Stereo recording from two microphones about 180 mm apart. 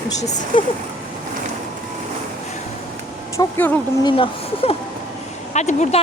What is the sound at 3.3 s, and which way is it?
Speech, 10° left (ahead or behind).